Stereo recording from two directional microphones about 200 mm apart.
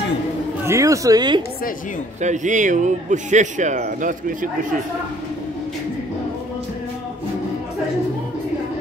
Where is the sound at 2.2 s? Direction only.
40° right (ahead or behind).